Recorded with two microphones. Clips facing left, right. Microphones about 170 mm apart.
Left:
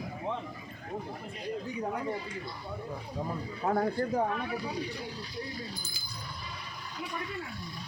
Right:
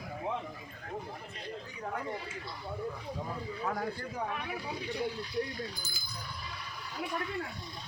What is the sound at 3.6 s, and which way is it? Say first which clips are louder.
Speech: left 7 dB; 35° left (ahead or behind).